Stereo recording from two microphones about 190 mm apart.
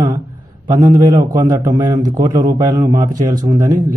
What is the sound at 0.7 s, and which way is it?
A man's voice, 20° right (ahead or behind).